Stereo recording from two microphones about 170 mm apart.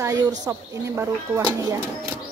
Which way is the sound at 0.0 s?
20° right (ahead or behind).